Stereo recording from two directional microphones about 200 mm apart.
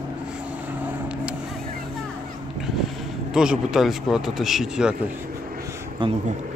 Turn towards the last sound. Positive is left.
turn(degrees=-25)  # may be behind; listen again after turning